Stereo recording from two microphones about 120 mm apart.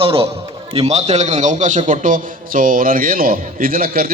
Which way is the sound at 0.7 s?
65° right (ahead or behind).